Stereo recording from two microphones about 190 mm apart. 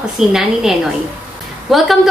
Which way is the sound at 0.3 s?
Centre (ahead or behind).